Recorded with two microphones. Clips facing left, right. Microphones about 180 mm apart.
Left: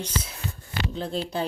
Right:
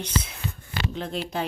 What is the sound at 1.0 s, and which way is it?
Speech, 35° left (ahead or behind).